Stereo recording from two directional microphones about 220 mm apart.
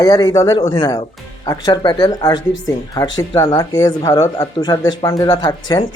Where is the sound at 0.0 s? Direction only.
15° left (ahead or behind).